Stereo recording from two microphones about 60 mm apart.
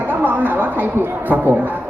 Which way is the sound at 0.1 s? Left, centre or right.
Right.